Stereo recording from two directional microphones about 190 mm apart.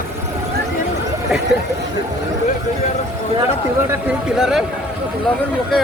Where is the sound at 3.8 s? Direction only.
5° right (ahead or behind).